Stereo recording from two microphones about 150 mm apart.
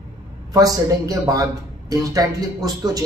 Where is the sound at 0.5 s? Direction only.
25° right (ahead or behind).